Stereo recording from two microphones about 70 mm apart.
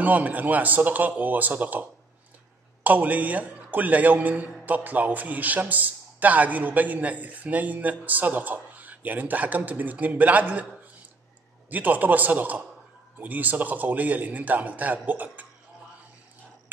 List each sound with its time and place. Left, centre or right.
0.0 s a man's voice: right
11.7 s a man's voice: right